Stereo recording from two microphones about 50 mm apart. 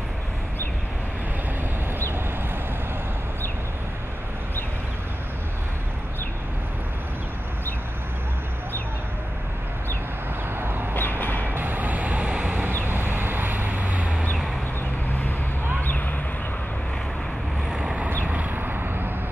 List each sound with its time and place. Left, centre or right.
10.6 s a sound: right
11.0 s vehicle: left
11.4 s vehicle: right
12.3 s vehicle: centre
12.8 s vehicle: right
17.6 s vehicle: centre
18.2 s vehicle: right